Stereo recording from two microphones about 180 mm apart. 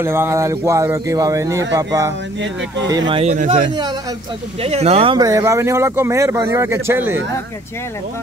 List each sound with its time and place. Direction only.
0.0 s speech: 15° right (ahead or behind)